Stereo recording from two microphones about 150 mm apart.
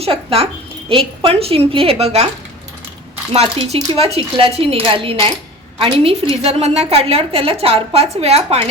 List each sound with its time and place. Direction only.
0.0 s a woman's voice: 40° right (ahead or behind)
3.3 s a woman's voice: 45° right (ahead or behind)